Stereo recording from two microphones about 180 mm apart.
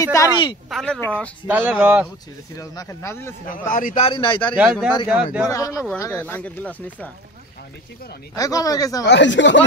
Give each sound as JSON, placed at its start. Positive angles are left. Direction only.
{"t": 0.0, "sound": "speech", "side_deg": 15}
{"t": 0.7, "sound": "speech", "side_deg": 5}
{"t": 1.5, "sound": "speech", "side_deg": -5}
{"t": 2.5, "sound": "speech", "side_deg": 20}
{"t": 3.4, "sound": "a man's voice", "side_deg": 50}
{"t": 4.0, "sound": "speech", "side_deg": 30}
{"t": 4.6, "sound": "a man's voice", "side_deg": -5}
{"t": 5.5, "sound": "speech", "side_deg": 20}
{"t": 8.4, "sound": "speech", "side_deg": 20}
{"t": 9.0, "sound": "speech", "side_deg": 80}